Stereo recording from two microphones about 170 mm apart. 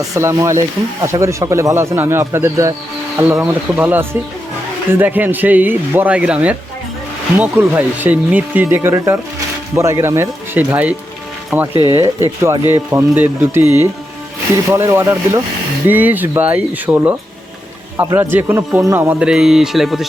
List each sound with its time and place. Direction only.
0.0 s speech: 20° right (ahead or behind); by 20.1 s centre (ahead or behind)